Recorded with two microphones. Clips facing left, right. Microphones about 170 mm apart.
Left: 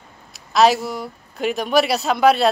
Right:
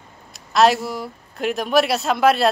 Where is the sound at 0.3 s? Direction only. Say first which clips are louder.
Left 1 dB; centre (ahead or behind).